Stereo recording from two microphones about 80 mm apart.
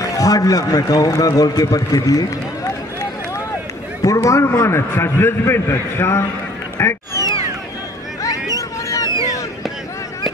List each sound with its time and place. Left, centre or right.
0.1 s a man's voice: left
4.0 s a man's voice: left
8.2 s a sound: left